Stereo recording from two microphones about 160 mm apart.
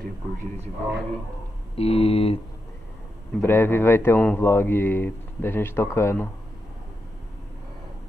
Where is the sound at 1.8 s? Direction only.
40° left (ahead or behind).